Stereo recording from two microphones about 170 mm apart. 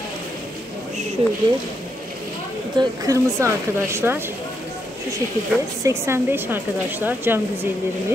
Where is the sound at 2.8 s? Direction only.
20° right (ahead or behind).